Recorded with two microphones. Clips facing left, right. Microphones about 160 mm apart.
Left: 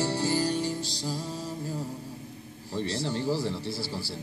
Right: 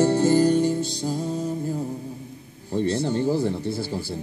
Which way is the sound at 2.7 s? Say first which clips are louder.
Right 7 dB; 50° right (ahead or behind).